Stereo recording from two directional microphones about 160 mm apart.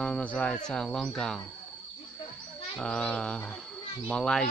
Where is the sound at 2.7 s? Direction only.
5° left (ahead or behind).